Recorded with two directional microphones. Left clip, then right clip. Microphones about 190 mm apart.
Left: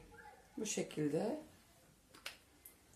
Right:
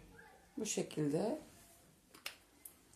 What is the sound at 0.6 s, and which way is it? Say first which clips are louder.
Speech: right 1 dB; 20° right (ahead or behind).